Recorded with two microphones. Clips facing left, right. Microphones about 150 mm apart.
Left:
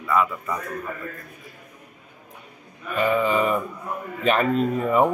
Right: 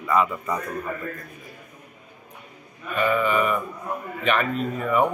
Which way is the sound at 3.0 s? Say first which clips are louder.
Left 1 dB; 25° left (ahead or behind).